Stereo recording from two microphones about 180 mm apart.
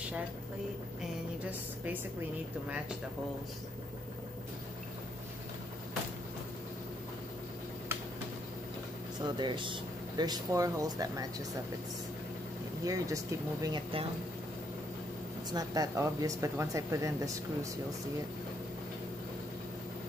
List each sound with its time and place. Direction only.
9.2 s speech: 25° right (ahead or behind)
12.8 s speech: 20° right (ahead or behind)
15.5 s speech: 20° right (ahead or behind)